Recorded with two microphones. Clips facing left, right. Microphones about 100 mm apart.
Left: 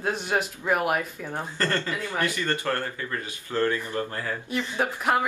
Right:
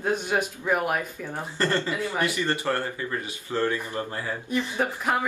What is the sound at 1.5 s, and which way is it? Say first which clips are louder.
Speech: right 3 dB; 20° right (ahead or behind).